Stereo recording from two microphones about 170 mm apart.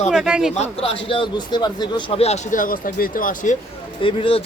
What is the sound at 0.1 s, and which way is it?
Speech, 5° right (ahead or behind).